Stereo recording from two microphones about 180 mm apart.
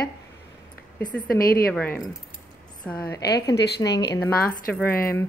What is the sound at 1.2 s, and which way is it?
Speech, 55° left (ahead or behind).